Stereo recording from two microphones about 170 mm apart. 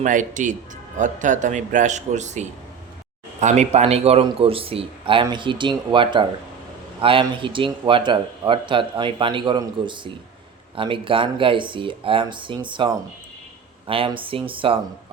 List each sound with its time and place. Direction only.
0.0 s speech: 50° right (ahead or behind); by 14.8 s 30° right (ahead or behind)